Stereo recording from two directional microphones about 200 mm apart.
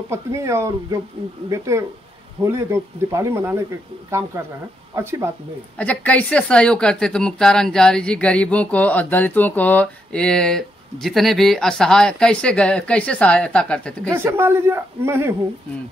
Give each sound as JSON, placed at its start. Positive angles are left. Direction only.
{"t": 0.1, "sound": "a woman's voice", "side_deg": -15}
{"t": 5.8, "sound": "a woman's voice", "side_deg": 10}
{"t": 14.1, "sound": "a woman's voice", "side_deg": -10}